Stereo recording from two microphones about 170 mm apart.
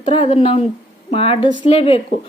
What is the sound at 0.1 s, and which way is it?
Speech, 35° left (ahead or behind).